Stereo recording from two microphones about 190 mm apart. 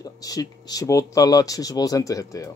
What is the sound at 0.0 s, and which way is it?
Speech, 20° left (ahead or behind).